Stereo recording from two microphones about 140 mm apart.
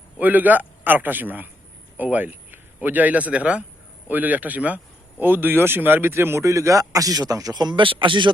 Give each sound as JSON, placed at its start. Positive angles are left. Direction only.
{"t": 0.2, "sound": "a man's voice", "side_deg": -10}